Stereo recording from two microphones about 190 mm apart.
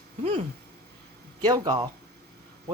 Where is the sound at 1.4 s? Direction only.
20° right (ahead or behind).